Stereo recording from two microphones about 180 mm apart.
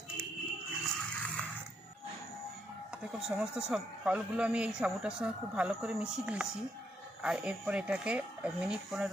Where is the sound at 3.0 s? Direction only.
5° right (ahead or behind).